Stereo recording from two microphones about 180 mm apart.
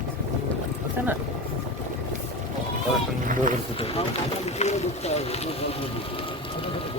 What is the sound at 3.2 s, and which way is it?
Speech, 50° right (ahead or behind).